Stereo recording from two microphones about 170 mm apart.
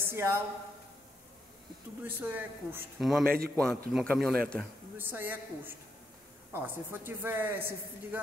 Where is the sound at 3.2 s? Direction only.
60° right (ahead or behind).